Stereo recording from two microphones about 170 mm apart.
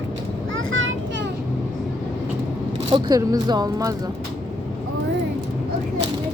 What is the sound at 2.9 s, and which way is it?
Speech, 20° right (ahead or behind).